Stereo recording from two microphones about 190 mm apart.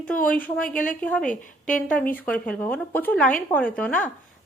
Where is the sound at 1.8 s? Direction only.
10° left (ahead or behind).